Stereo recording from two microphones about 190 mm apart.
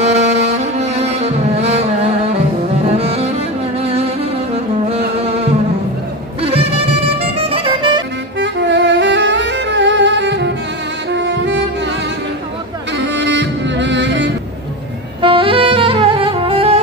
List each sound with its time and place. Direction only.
0.0 s music: 35° right (ahead or behind)
6.4 s music: 30° right (ahead or behind)
8.4 s music: 70° right (ahead or behind)
13.1 s music: 70° right (ahead or behind)
15.2 s saxophone: 25° right (ahead or behind)